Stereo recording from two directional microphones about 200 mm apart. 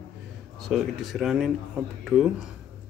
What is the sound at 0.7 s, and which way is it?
Speech, centre (ahead or behind).